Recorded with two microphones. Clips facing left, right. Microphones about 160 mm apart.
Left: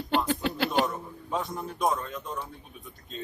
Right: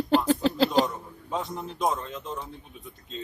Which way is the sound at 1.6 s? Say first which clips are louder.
Even; 25° right (ahead or behind).